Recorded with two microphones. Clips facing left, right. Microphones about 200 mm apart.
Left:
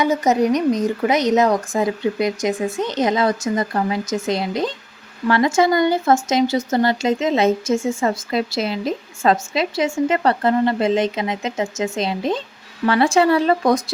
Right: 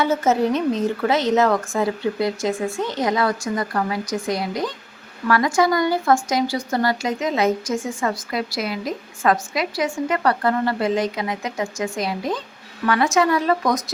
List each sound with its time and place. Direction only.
0.0 s speech: 15° left (ahead or behind)